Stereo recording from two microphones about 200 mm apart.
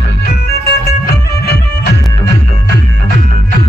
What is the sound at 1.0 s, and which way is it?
Music, 50° left (ahead or behind).